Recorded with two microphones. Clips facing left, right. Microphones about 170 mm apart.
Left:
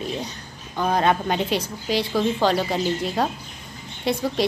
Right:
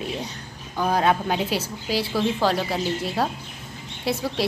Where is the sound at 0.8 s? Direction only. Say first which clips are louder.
Left 1 dB; 5° right (ahead or behind).